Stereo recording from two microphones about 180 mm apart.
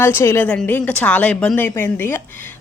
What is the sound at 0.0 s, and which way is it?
Speech, 15° left (ahead or behind).